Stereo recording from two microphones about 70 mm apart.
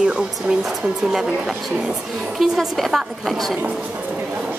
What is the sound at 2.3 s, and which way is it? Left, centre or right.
A woman's voice, centre.